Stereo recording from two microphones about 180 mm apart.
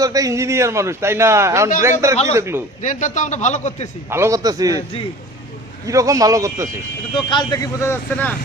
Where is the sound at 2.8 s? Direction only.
45° left (ahead or behind).